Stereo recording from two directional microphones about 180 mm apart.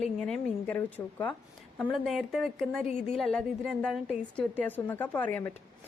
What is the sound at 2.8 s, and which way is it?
Speech, 40° left (ahead or behind).